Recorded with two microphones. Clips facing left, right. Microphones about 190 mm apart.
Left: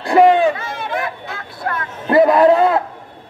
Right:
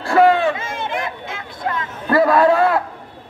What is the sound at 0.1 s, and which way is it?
Speech, 20° left (ahead or behind).